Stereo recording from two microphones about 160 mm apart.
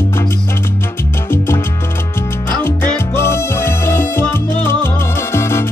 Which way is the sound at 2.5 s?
10° left (ahead or behind).